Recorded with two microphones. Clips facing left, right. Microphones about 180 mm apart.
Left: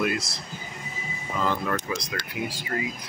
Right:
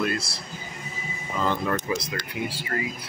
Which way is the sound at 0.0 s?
15° left (ahead or behind).